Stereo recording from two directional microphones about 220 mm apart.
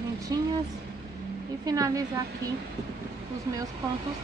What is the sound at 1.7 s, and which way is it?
Speech, 15° right (ahead or behind).